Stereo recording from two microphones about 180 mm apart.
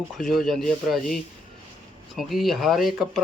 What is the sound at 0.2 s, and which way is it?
Speech, centre (ahead or behind).